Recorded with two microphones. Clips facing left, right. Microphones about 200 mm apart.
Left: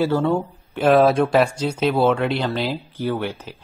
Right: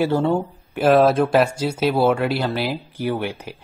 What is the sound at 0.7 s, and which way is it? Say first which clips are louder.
Speech: even; centre (ahead or behind).